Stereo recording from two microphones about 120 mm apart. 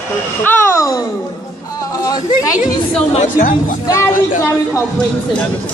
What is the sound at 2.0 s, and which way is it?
Speech, 30° left (ahead or behind).